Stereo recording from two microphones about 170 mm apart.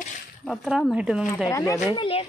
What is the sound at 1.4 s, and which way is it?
Speech, 20° left (ahead or behind).